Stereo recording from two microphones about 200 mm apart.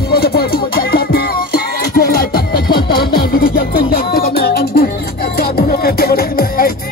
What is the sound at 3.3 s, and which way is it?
Music, 50° left (ahead or behind).